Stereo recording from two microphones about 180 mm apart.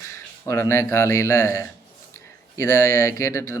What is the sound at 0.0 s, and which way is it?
Speech, 15° left (ahead or behind).